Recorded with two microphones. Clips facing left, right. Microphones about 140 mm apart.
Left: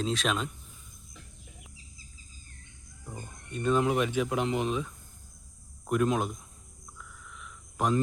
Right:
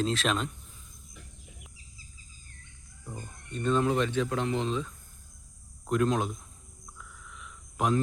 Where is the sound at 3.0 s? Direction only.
5° left (ahead or behind).